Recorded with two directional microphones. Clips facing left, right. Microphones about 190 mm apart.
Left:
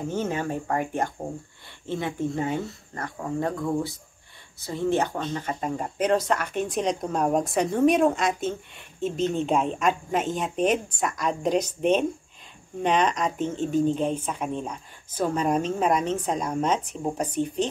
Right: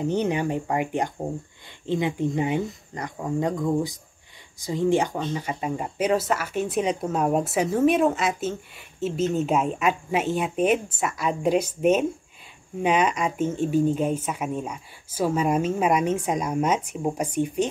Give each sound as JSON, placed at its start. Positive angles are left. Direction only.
{"t": 0.0, "sound": "speech", "side_deg": -15}